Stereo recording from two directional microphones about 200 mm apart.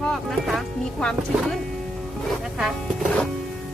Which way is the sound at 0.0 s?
Centre (ahead or behind).